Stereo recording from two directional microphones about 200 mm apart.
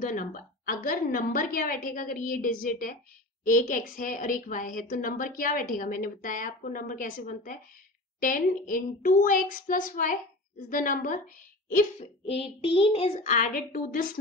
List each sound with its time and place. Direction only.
0.0 s a woman's voice: 40° left (ahead or behind)
11.7 s a child's voice: 30° left (ahead or behind)